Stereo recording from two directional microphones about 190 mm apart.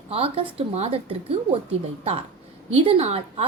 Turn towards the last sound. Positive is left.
turn(degrees=-35)  # may be behind; listen again after turning